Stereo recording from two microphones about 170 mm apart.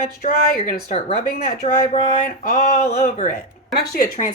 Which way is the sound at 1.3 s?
60° left (ahead or behind).